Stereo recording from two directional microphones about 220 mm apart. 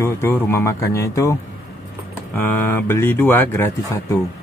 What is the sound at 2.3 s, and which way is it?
Speech, 10° left (ahead or behind).